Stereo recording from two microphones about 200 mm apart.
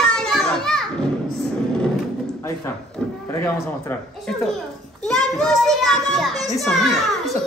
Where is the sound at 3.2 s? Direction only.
10° left (ahead or behind).